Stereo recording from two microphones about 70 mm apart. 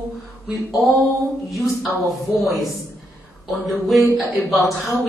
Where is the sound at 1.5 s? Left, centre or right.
Centre.